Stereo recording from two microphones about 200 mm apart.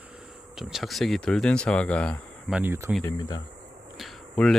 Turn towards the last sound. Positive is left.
turn(degrees=0)  # may be behind; listen again after turning